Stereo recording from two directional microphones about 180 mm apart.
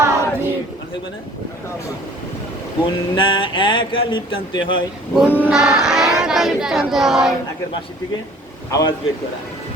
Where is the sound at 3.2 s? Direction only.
30° left (ahead or behind).